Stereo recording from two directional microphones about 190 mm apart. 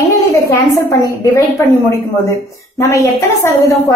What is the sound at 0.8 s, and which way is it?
Speech, 15° left (ahead or behind).